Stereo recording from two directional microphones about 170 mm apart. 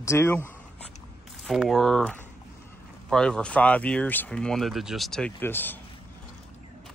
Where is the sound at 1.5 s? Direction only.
Centre (ahead or behind).